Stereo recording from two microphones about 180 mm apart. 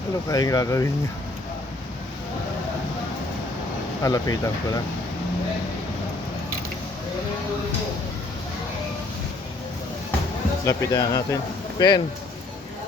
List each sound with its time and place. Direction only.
0.3 s speech: 20° left (ahead or behind)
4.0 s speech: 20° left (ahead or behind)
10.7 s speech: 20° left (ahead or behind)